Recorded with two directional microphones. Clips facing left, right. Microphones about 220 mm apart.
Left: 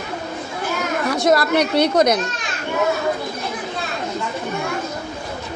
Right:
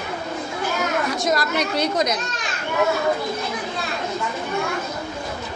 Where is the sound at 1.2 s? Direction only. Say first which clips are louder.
Left 6 dB; 60° left (ahead or behind).